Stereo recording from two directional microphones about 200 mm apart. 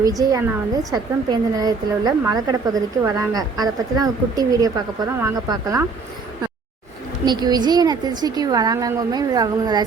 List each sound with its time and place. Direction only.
0.0 s speech: 15° right (ahead or behind)
7.3 s a woman's voice: 20° right (ahead or behind)